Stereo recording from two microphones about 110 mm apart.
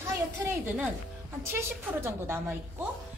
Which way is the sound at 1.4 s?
25° right (ahead or behind).